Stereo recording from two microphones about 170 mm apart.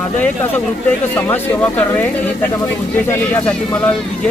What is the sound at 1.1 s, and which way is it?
Speech, 10° left (ahead or behind).